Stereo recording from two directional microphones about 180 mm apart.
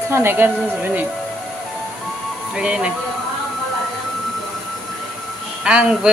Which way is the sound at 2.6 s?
5° right (ahead or behind).